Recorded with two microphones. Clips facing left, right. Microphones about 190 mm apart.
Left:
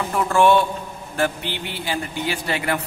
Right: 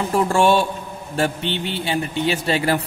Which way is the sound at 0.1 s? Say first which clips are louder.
Even; 30° right (ahead or behind).